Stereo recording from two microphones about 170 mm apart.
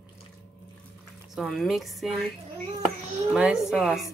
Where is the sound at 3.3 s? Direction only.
Centre (ahead or behind).